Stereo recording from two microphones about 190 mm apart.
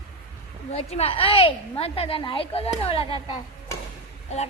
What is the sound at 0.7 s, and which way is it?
A woman's voice, 35° left (ahead or behind).